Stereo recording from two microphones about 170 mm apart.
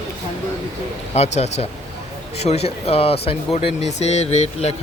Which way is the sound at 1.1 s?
40° left (ahead or behind).